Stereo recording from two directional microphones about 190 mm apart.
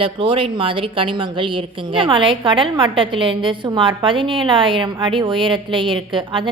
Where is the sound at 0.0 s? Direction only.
30° right (ahead or behind).